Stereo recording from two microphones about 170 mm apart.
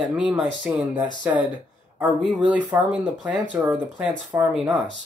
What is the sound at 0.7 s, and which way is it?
Speech, 5° right (ahead or behind).